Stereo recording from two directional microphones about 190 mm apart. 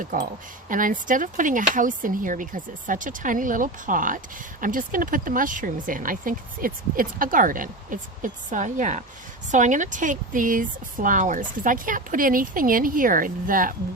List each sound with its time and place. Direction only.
0.0 s speech: 45° right (ahead or behind)